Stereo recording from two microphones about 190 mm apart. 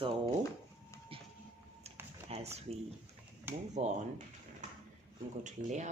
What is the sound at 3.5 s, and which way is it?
Speech, 10° right (ahead or behind).